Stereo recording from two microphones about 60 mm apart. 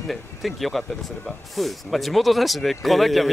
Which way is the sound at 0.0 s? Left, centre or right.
Centre.